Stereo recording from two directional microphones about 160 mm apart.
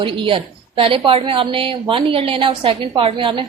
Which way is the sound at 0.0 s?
30° right (ahead or behind).